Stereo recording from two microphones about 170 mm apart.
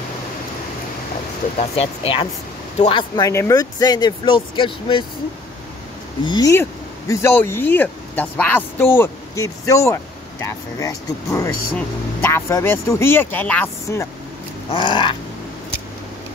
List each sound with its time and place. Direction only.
1.6 s speech: 35° left (ahead or behind)
3.3 s speech: 20° left (ahead or behind)
6.2 s speech: 25° left (ahead or behind)
6.5 s speech: 15° left (ahead or behind)
14.7 s speech: 25° left (ahead or behind)